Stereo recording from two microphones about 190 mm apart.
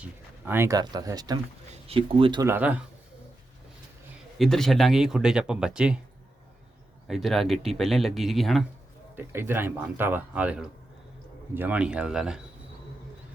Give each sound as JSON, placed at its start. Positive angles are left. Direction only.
{"t": 0.0, "sound": "speech", "side_deg": -10}
{"t": 2.4, "sound": "speech", "side_deg": -10}
{"t": 4.4, "sound": "speech", "side_deg": 0}
{"t": 7.1, "sound": "speech", "side_deg": 0}
{"t": 9.1, "sound": "speech", "side_deg": -10}